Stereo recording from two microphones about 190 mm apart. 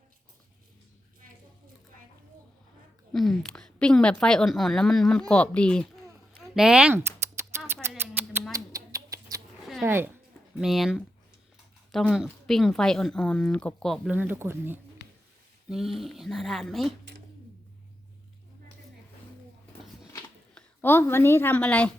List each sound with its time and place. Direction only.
3.1 s a woman's voice: centre (ahead or behind)
6.5 s typing: 5° right (ahead or behind)
7.9 s cat: 10° right (ahead or behind)
8.5 s a sound: 20° right (ahead or behind)
9.8 s a woman's voice: 10° right (ahead or behind)
14.1 s speech: 10° right (ahead or behind)
15.7 s a woman's voice: centre (ahead or behind)
20.6 s a woman's voice: 10° left (ahead or behind)